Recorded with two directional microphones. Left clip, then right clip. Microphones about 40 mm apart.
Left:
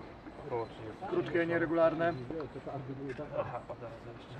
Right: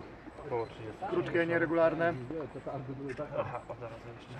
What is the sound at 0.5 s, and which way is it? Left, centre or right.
Speech, right.